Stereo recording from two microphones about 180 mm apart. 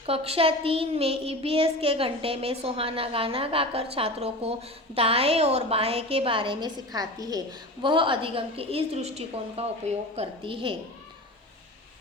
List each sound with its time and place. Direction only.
0.0 s a woman's voice: 35° right (ahead or behind)